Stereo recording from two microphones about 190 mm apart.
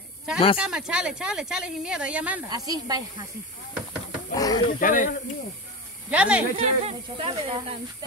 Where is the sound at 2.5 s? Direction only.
20° right (ahead or behind).